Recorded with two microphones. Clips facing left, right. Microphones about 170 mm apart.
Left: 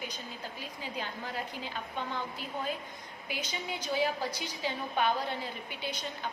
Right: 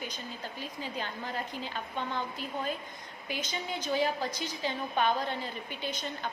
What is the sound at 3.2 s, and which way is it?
A woman's voice, 10° left (ahead or behind).